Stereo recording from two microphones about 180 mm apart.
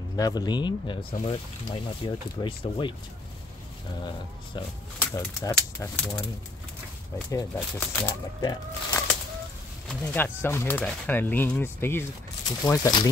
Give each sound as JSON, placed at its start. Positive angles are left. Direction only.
{"t": 0.1, "sound": "speech", "side_deg": 20}
{"t": 4.6, "sound": "speech", "side_deg": 25}
{"t": 4.9, "sound": "speech", "side_deg": 15}
{"t": 7.5, "sound": "speech", "side_deg": 10}
{"t": 8.4, "sound": "speech", "side_deg": 25}
{"t": 9.8, "sound": "speech", "side_deg": 10}